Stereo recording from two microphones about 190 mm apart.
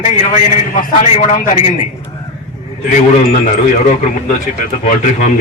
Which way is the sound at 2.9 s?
35° left (ahead or behind).